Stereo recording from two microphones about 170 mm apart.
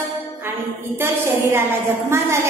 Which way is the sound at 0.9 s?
15° right (ahead or behind).